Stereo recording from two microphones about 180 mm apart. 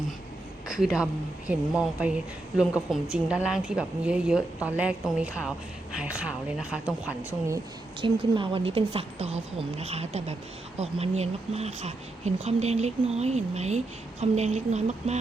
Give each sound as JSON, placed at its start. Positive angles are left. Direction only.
{"t": 0.7, "sound": "a woman's voice", "side_deg": -5}
{"t": 8.0, "sound": "speech", "side_deg": -30}